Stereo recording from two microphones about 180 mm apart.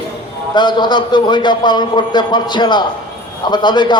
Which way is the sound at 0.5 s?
25° left (ahead or behind).